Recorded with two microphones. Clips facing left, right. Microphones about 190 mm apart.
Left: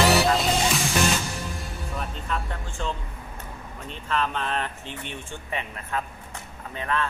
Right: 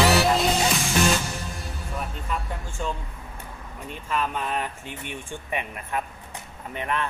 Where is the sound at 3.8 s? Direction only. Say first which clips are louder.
Even; 10° right (ahead or behind).